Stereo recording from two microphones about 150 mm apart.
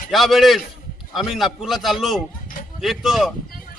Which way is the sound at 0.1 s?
Centre (ahead or behind).